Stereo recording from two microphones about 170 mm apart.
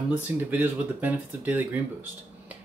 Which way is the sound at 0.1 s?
10° right (ahead or behind).